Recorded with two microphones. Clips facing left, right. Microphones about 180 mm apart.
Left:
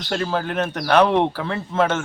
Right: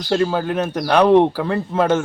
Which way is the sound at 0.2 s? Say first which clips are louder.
Right 4 dB; 10° right (ahead or behind).